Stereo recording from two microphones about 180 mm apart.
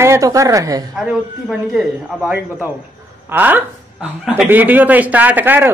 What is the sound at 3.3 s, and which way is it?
Speech, 10° right (ahead or behind).